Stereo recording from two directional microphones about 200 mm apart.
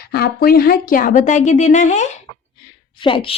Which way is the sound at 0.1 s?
50° left (ahead or behind).